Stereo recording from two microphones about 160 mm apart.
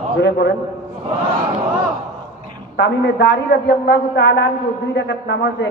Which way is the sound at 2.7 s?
90° left.